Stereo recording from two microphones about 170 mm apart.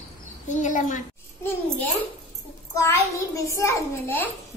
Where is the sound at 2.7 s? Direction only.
20° left (ahead or behind).